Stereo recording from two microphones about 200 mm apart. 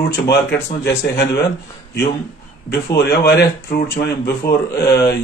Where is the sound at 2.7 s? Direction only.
50° left (ahead or behind).